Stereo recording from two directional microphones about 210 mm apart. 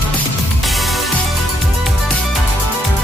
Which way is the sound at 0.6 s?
Centre (ahead or behind).